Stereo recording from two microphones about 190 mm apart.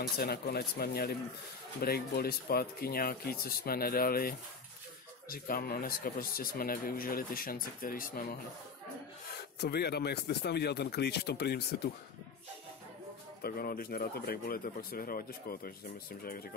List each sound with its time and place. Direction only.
0.0 s a man's voice: 55° left (ahead or behind)
9.6 s a man's voice: 60° left (ahead or behind)
13.4 s a man's voice: 50° left (ahead or behind)